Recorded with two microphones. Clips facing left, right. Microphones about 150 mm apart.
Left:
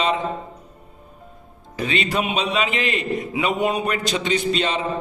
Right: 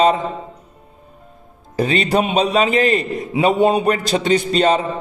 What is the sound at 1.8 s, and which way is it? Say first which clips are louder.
A man's voice: right 6 dB; 40° right (ahead or behind).